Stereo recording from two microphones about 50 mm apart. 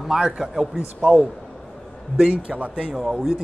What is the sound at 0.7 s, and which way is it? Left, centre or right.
Speech, right.